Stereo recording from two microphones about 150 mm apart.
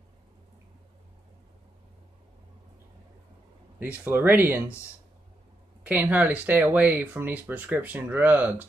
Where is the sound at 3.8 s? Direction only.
15° right (ahead or behind).